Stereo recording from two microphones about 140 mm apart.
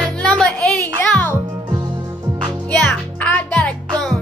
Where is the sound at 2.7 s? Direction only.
10° left (ahead or behind).